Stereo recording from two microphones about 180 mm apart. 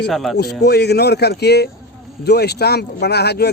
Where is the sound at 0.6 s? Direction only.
65° left (ahead or behind).